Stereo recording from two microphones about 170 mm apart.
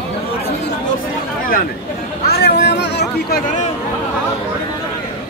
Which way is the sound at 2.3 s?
75° left (ahead or behind).